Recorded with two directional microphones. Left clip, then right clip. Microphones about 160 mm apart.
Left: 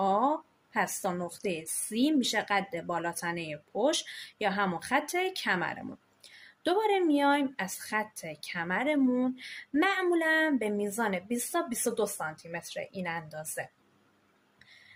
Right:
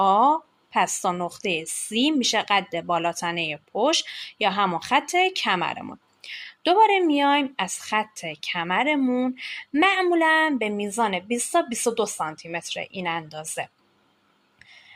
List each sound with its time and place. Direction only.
0.0 s a woman's voice: 20° right (ahead or behind)